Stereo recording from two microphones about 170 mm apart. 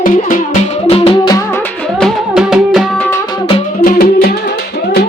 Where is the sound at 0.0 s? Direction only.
50° left (ahead or behind).